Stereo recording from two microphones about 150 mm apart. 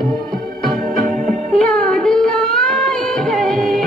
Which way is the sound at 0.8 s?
65° right (ahead or behind).